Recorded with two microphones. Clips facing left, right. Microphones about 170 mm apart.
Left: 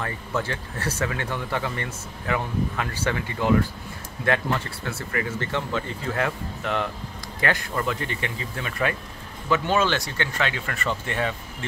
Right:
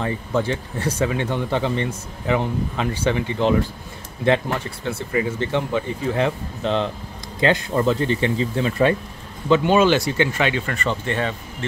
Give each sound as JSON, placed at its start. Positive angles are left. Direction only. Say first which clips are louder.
{"t": 0.0, "sound": "speech", "louder": "right 6 dB", "side_deg": -20}
{"t": 9.5, "sound": "speech", "louder": "right 7 dB", "side_deg": -15}
{"t": 10.5, "sound": "speech", "louder": "right 5 dB", "side_deg": 0}